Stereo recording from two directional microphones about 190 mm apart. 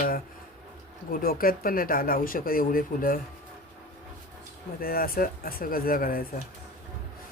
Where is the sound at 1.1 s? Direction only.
50° left (ahead or behind).